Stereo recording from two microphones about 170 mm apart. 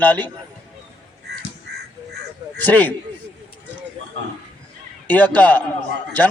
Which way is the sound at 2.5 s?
10° left (ahead or behind).